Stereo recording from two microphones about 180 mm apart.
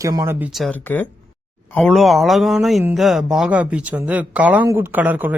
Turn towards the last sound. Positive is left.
turn(degrees=-10)  # may be behind; listen again after turning